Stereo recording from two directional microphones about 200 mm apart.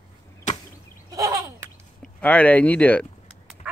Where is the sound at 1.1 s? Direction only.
15° right (ahead or behind).